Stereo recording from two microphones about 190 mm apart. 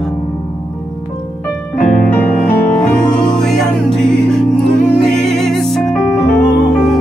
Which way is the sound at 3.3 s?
Centre (ahead or behind).